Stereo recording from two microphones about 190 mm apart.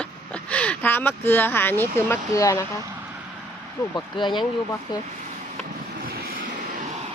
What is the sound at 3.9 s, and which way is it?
Speech, 25° left (ahead or behind).